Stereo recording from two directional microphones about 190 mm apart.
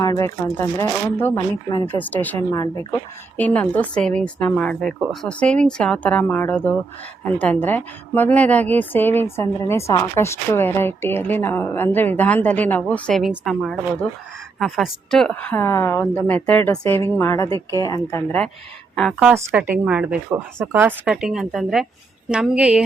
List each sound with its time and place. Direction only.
0.0 s a woman's voice: 20° left (ahead or behind); by 19.3 s 5° left (ahead or behind)
19.3 s speech: 10° right (ahead or behind)